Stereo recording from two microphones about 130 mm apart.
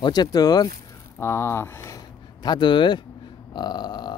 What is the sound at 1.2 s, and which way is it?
Speech, 20° left (ahead or behind).